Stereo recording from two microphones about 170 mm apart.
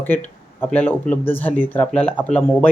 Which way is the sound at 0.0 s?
10° left (ahead or behind).